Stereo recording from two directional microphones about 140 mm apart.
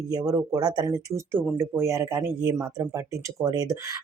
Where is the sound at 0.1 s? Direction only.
25° right (ahead or behind).